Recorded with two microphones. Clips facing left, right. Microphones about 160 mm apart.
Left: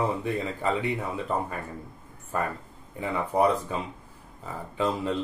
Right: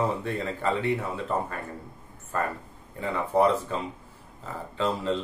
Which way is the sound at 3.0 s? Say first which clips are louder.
Right 1 dB; 15° left (ahead or behind).